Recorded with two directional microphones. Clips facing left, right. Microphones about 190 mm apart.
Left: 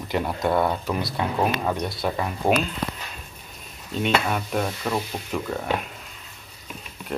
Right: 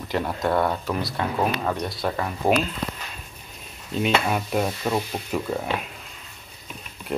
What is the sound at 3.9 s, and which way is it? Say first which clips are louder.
Stir: right 1 dB; 5° right (ahead or behind).